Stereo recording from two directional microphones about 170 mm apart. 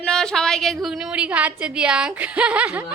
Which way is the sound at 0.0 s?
5° left (ahead or behind).